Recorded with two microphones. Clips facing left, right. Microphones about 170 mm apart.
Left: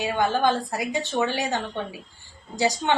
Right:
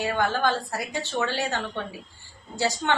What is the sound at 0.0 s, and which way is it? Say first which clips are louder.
A woman's voice: left 2 dB; 15° left (ahead or behind).